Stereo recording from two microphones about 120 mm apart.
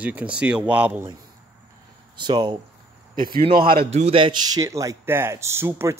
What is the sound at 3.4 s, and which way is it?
Speech, 60° right (ahead or behind).